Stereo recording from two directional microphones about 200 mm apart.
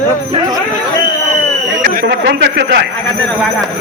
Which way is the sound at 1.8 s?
50° right (ahead or behind).